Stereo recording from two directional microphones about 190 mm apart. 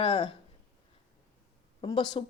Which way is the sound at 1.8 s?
25° left (ahead or behind).